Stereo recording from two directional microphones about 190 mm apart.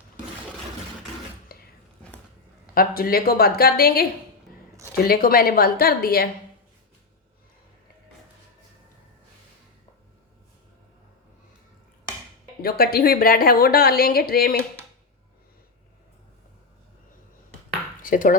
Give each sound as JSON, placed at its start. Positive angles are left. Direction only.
{"t": 1.5, "sound": "a sound", "side_deg": 50}
{"t": 2.7, "sound": "a woman's voice", "side_deg": 50}
{"t": 5.0, "sound": "a woman's voice", "side_deg": 50}
{"t": 12.6, "sound": "a woman's voice", "side_deg": 55}
{"t": 18.0, "sound": "speech", "side_deg": 45}